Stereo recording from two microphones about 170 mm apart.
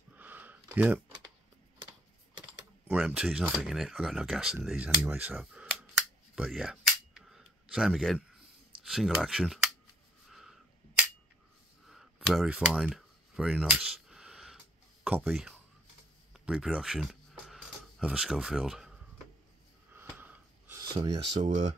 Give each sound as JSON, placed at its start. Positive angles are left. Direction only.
{"t": 0.1, "sound": "sniff", "side_deg": -10}
{"t": 2.9, "sound": "speech", "side_deg": -5}
{"t": 10.3, "sound": "a sound", "side_deg": 0}
{"t": 15.0, "sound": "speech", "side_deg": -5}
{"t": 19.9, "sound": "a sound", "side_deg": -10}
{"t": 20.8, "sound": "speech", "side_deg": -25}